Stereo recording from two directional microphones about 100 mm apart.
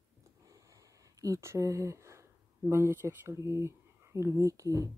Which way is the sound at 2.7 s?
25° right (ahead or behind).